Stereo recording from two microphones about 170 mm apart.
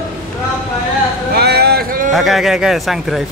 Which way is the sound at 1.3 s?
70° right (ahead or behind).